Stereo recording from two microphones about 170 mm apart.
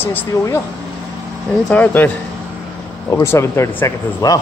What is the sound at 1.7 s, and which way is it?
Speech, 10° left (ahead or behind).